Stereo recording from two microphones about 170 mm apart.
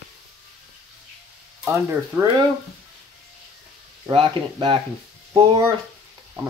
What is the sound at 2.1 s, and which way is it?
Speech, 10° right (ahead or behind).